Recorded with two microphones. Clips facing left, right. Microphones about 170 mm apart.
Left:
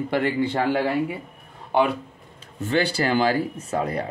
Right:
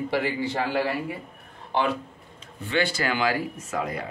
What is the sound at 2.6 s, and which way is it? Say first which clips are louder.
A man's voice: left 3 dB; 40° left (ahead or behind).